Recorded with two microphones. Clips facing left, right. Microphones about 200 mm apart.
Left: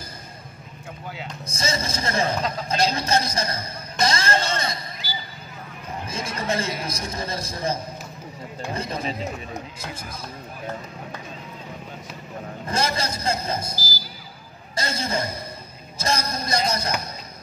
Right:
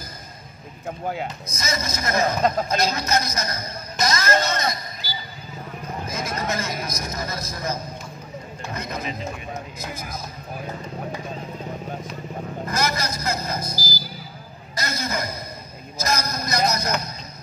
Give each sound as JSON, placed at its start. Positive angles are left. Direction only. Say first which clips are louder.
{"t": 0.8, "sound": "speech", "louder": "right 9 dB", "side_deg": -50}
{"t": 1.5, "sound": "a man's voice", "louder": "left 4 dB", "side_deg": 30}
{"t": 4.0, "sound": "music", "louder": "right 1 dB", "side_deg": 30}
{"t": 6.0, "sound": "a man's voice", "louder": "even", "side_deg": 30}
{"t": 12.6, "sound": "a man's voice", "louder": "left 1 dB", "side_deg": 30}
{"t": 14.8, "sound": "a man's voice", "louder": "left 1 dB", "side_deg": 30}